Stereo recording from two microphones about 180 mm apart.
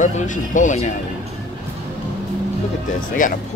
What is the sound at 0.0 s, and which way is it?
Speech, 45° left (ahead or behind).